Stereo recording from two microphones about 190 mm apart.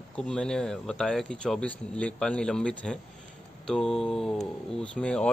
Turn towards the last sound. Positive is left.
turn(degrees=5)  # may be behind; listen again after turning